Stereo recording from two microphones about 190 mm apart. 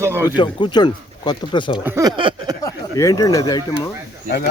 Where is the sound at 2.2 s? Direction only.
25° right (ahead or behind).